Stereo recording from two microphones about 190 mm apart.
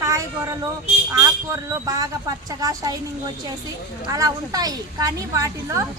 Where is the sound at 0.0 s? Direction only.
15° right (ahead or behind).